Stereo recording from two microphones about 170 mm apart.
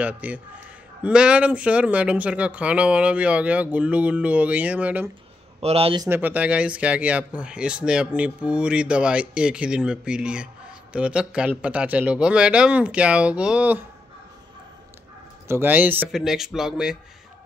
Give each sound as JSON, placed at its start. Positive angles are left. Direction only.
{"t": 0.0, "sound": "speech", "side_deg": -10}
{"t": 5.6, "sound": "speech", "side_deg": -35}
{"t": 6.0, "sound": "speech", "side_deg": -10}
{"t": 15.4, "sound": "speech", "side_deg": -15}